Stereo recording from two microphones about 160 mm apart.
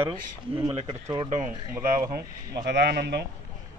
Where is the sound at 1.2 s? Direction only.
50° right (ahead or behind).